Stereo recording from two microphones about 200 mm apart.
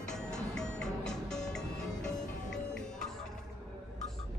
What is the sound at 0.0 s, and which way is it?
Music, 5° left (ahead or behind).